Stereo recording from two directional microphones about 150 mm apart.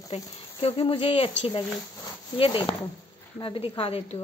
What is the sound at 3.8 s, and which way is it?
Speech, 35° left (ahead or behind).